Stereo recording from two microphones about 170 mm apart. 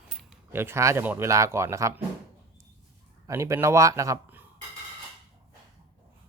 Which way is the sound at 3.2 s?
15° right (ahead or behind).